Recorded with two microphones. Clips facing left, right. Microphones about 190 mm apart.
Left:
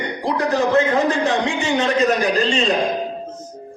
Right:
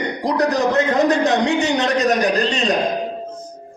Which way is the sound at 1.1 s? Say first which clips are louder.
Right 3 dB; 40° right (ahead or behind).